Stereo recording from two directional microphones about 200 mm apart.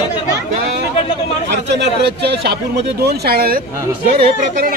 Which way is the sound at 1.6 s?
60° right (ahead or behind).